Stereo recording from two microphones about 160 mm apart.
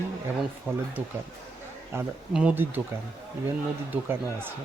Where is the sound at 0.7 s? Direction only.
10° right (ahead or behind).